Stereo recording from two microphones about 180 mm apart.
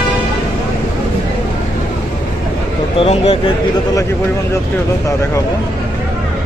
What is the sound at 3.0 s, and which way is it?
Speech, 35° left (ahead or behind).